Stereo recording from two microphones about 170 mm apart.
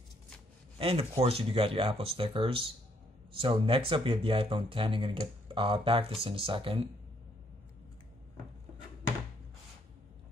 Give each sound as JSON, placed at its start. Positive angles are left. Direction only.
{"t": 0.7, "sound": "speech", "side_deg": -35}